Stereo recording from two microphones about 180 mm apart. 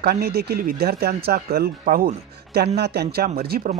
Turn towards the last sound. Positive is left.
turn(degrees=-55)  # may be behind; listen again after turning